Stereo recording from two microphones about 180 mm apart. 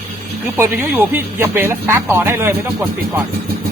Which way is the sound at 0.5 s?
15° right (ahead or behind).